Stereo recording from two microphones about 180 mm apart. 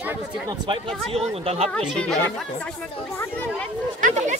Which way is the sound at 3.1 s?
10° left (ahead or behind).